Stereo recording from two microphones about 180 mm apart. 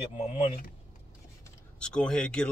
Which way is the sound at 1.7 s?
5° left (ahead or behind).